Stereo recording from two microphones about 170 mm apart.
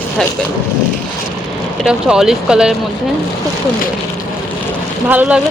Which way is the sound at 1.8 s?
5° right (ahead or behind).